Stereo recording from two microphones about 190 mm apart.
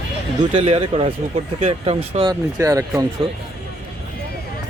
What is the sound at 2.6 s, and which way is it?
Speech, 15° right (ahead or behind).